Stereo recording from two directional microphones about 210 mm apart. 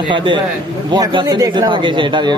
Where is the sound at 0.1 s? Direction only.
25° right (ahead or behind).